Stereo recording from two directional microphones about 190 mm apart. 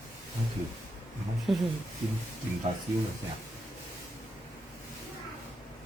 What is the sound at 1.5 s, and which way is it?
Speech, centre (ahead or behind).